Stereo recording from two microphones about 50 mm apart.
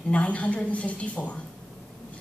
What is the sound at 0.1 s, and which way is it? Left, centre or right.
A woman's voice, left.